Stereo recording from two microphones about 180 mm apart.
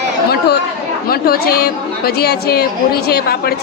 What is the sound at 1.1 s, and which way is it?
A woman's voice, 60° left (ahead or behind).